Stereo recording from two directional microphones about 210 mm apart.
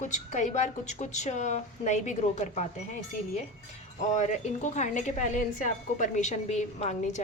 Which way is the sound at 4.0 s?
35° left (ahead or behind).